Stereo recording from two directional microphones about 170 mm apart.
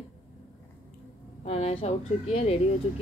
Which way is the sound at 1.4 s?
40° left (ahead or behind).